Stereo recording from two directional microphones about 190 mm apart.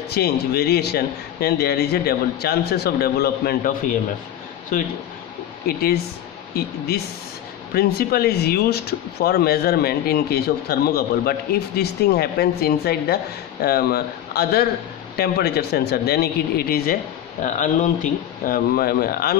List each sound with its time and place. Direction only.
0.1 s a man's voice: 55° left (ahead or behind)
5.7 s a man's voice: 55° left (ahead or behind)
7.7 s a man's voice: 55° left (ahead or behind)
17.4 s speech: 40° left (ahead or behind)
18.4 s speech: 50° left (ahead or behind)